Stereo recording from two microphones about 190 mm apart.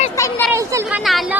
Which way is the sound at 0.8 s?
5° right (ahead or behind).